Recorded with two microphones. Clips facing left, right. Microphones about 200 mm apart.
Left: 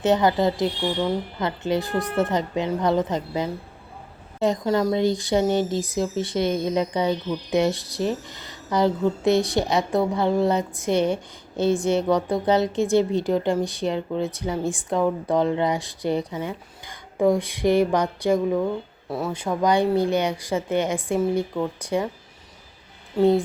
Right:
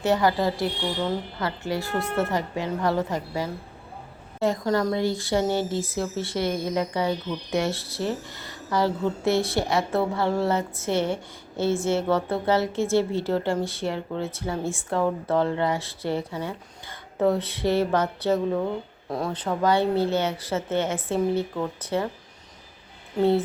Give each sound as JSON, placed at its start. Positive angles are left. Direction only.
{"t": 0.0, "sound": "a woman's voice", "side_deg": 20}